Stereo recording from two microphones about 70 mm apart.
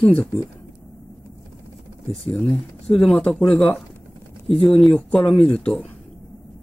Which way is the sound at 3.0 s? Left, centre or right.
Centre.